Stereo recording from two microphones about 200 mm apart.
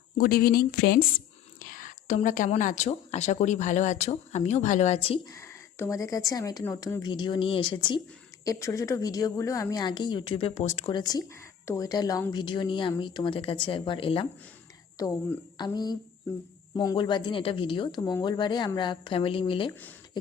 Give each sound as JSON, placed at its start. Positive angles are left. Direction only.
{"t": 0.2, "sound": "speech", "side_deg": 50}
{"t": 5.3, "sound": "a woman's voice", "side_deg": 15}
{"t": 10.9, "sound": "a woman's voice", "side_deg": 20}